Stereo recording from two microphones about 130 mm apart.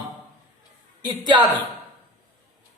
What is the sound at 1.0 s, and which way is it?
Speech, 35° right (ahead or behind).